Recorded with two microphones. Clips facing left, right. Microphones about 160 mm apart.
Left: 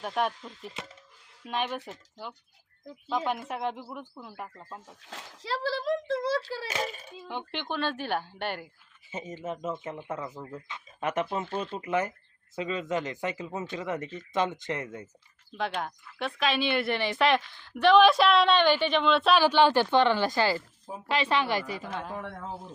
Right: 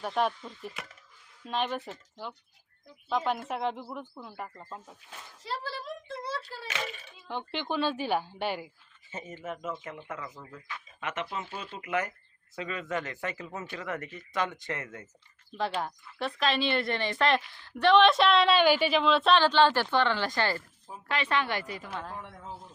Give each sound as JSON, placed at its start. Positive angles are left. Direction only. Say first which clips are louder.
{"t": 0.0, "sound": "speech", "louder": "right 1 dB", "side_deg": 0}
{"t": 5.0, "sound": "a sound", "louder": "left 4 dB", "side_deg": 90}
{"t": 6.7, "sound": "speech", "louder": "left 4 dB", "side_deg": 40}
{"t": 7.3, "sound": "a woman's voice", "louder": "right 1 dB", "side_deg": 0}
{"t": 9.0, "sound": "speech", "louder": "left 3 dB", "side_deg": 15}
{"t": 15.5, "sound": "speech", "louder": "even", "side_deg": 0}
{"t": 21.1, "sound": "speech", "louder": "left 3 dB", "side_deg": 30}
{"t": 22.1, "sound": "speech", "louder": "left 5 dB", "side_deg": 75}